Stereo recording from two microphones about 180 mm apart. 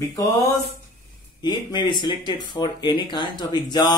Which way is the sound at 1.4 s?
25° left (ahead or behind).